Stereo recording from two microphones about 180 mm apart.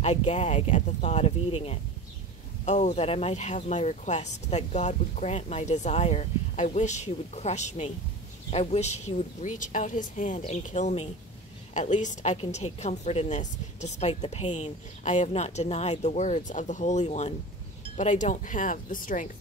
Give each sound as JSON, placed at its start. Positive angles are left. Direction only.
{"t": 0.0, "sound": "a woman's voice", "side_deg": 40}